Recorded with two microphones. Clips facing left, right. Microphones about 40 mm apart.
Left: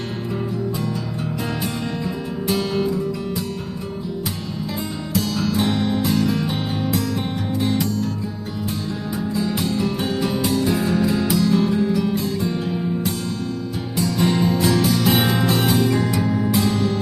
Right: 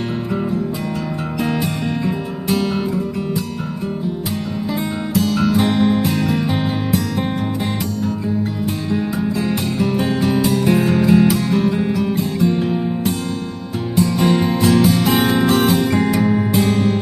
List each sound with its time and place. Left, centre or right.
1.4 s music: right
5.3 s music: right
9.0 s music: right
11.0 s music: right
12.4 s music: right
12.6 s music: right